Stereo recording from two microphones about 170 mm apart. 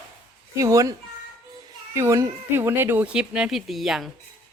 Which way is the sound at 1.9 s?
15° right (ahead or behind).